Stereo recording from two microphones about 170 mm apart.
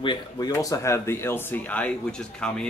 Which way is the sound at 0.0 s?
30° left (ahead or behind).